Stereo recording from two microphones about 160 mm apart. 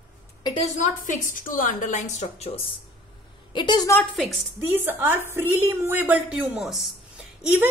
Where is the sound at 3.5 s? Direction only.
30° left (ahead or behind).